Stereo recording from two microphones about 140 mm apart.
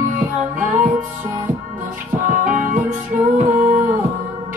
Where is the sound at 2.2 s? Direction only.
70° right (ahead or behind).